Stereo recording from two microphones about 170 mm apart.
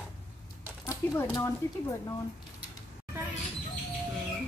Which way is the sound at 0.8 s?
15° left (ahead or behind).